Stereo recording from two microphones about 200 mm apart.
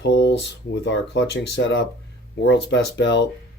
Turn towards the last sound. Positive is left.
turn(degrees=60)  # may be behind; listen again after turning